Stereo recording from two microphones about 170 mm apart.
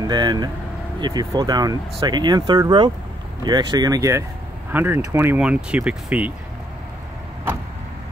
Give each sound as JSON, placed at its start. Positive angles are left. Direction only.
{"t": 0.0, "sound": "speech", "side_deg": -25}